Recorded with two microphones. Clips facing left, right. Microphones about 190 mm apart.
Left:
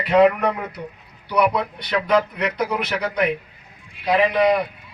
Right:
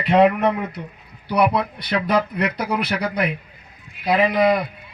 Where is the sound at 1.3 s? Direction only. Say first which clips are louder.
Right 1 dB; 30° right (ahead or behind).